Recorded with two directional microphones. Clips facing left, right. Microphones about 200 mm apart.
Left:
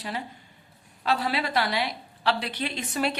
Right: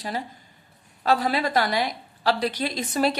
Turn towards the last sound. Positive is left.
turn(degrees=-40)  # may be behind; listen again after turning